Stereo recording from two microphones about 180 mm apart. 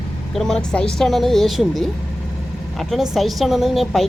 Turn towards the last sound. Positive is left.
turn(degrees=0)  # may be behind; listen again after turning